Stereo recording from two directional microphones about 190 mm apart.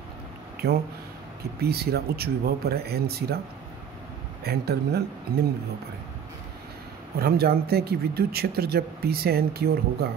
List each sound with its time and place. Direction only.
0.6 s speech: 55° right (ahead or behind)
4.5 s speech: 55° right (ahead or behind)
7.2 s speech: 55° right (ahead or behind)